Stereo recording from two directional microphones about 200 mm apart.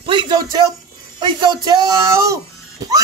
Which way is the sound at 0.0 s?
25° right (ahead or behind).